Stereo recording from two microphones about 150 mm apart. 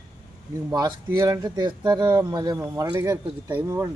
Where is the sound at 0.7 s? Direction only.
25° right (ahead or behind).